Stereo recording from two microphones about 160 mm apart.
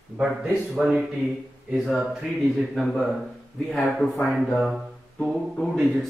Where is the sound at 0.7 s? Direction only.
5° right (ahead or behind).